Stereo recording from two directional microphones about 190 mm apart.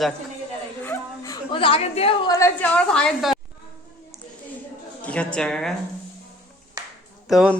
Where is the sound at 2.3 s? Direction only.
15° left (ahead or behind).